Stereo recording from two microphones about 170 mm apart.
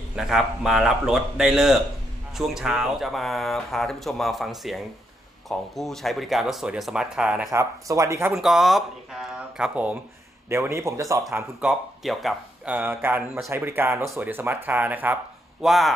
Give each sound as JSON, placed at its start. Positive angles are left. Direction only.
{"t": 0.1, "sound": "speech", "side_deg": 0}
{"t": 7.5, "sound": "speech", "side_deg": -20}
{"t": 8.4, "sound": "speech", "side_deg": 0}
{"t": 11.6, "sound": "speech", "side_deg": 0}